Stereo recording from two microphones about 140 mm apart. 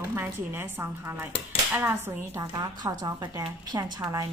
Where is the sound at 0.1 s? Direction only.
15° right (ahead or behind).